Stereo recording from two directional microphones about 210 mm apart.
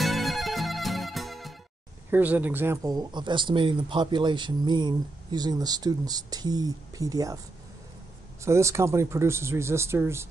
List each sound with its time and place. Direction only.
0.0 s music: centre (ahead or behind)
2.0 s speech: 10° right (ahead or behind)
8.4 s speech: 15° right (ahead or behind)